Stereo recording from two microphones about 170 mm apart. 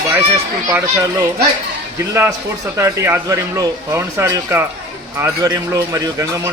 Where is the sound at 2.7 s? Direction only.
15° right (ahead or behind).